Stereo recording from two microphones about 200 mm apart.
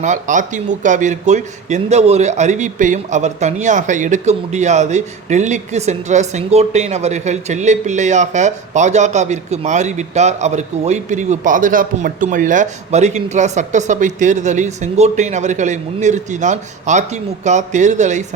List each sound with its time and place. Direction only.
0.0 s a man's voice: 40° right (ahead or behind)